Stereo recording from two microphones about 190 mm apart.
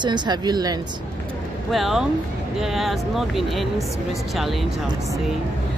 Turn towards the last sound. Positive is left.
turn(degrees=0)  # may be behind; listen again after turning